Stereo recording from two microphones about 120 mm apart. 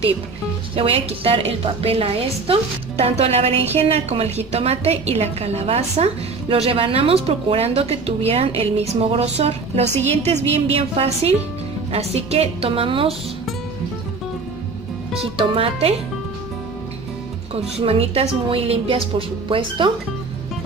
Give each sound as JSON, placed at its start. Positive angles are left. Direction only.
{"t": 0.7, "sound": "a woman's voice", "side_deg": -50}
{"t": 15.1, "sound": "a woman's voice", "side_deg": -50}
{"t": 17.6, "sound": "a woman's voice", "side_deg": -55}